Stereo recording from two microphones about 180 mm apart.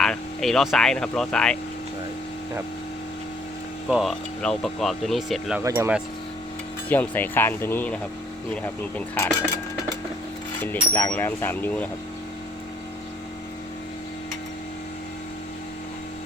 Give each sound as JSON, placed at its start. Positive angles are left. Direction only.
{"t": 0.0, "sound": "speech", "side_deg": 0}
{"t": 3.8, "sound": "speech", "side_deg": 0}
{"t": 5.6, "sound": "speech", "side_deg": -15}
{"t": 6.8, "sound": "speech", "side_deg": 10}
{"t": 10.6, "sound": "speech", "side_deg": 10}